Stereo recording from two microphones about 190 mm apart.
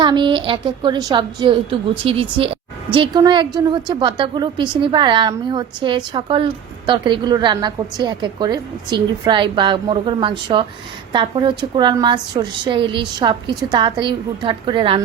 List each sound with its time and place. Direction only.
0.0 s a woman's voice: 25° right (ahead or behind)